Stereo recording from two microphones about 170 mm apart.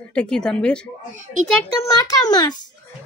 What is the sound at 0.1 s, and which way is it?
Speech, 5° left (ahead or behind).